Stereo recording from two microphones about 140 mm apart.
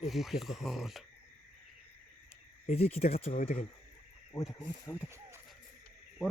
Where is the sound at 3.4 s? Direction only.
60° left (ahead or behind).